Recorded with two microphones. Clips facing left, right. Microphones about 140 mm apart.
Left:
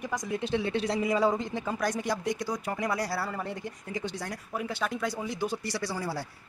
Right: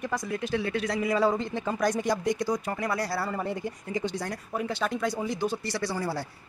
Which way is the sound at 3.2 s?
5° right (ahead or behind).